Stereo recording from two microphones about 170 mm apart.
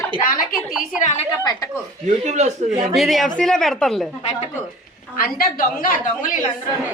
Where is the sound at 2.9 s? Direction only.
Centre (ahead or behind).